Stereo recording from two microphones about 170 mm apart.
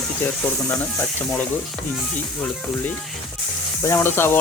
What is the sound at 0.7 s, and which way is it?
Speech, 15° left (ahead or behind).